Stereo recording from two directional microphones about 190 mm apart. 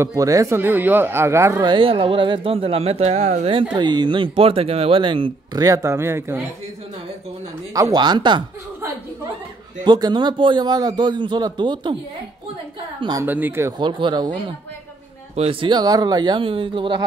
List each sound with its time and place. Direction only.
0.0 s speech: 15° right (ahead or behind); by 3.6 s 35° right (ahead or behind)
3.7 s speech: 25° right (ahead or behind)
7.7 s speech: 20° right (ahead or behind)
9.8 s speech: 20° right (ahead or behind)
13.2 s speech: 10° right (ahead or behind)
13.7 s speech: 25° right (ahead or behind)
15.3 s speech: 30° right (ahead or behind)